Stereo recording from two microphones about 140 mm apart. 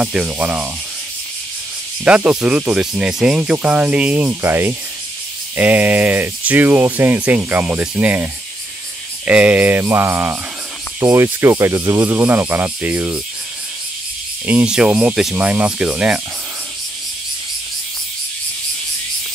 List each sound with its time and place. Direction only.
0.0 s speech: 10° right (ahead or behind)
2.0 s speech: 10° right (ahead or behind)
14.4 s speech: 10° right (ahead or behind)